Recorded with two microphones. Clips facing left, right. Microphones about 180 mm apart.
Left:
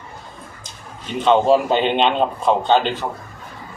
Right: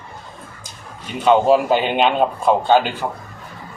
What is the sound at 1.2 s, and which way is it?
A man's voice, 5° right (ahead or behind).